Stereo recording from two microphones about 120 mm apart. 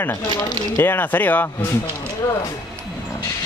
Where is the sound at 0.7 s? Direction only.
20° left (ahead or behind).